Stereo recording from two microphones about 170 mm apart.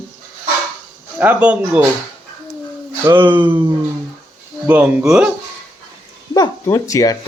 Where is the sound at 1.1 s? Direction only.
10° right (ahead or behind).